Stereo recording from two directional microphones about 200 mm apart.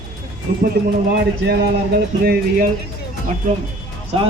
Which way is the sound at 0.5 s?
45° right (ahead or behind).